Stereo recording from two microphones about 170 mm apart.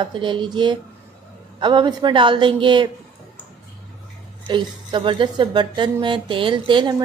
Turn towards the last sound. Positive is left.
turn(degrees=-30)  # may be behind; listen again after turning